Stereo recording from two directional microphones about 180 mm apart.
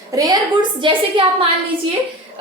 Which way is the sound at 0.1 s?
20° right (ahead or behind).